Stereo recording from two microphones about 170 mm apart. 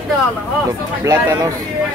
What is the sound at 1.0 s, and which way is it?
Speech, 20° right (ahead or behind).